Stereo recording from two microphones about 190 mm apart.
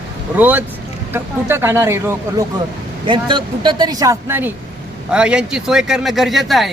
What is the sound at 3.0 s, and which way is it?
Speech, 25° right (ahead or behind).